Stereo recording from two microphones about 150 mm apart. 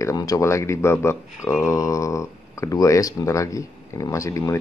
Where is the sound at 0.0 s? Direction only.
25° left (ahead or behind).